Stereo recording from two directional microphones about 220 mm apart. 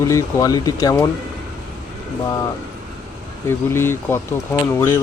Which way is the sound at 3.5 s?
10° left (ahead or behind).